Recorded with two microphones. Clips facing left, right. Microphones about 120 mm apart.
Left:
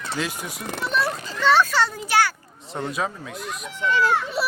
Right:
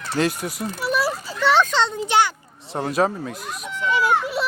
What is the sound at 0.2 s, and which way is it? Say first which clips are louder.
Speech: right 9 dB; 50° right (ahead or behind).